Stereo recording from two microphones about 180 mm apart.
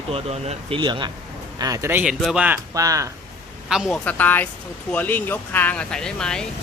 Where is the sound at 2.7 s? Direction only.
20° right (ahead or behind).